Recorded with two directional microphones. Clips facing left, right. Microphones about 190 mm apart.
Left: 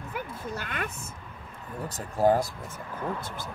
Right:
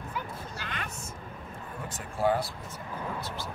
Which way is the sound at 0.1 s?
50° left (ahead or behind).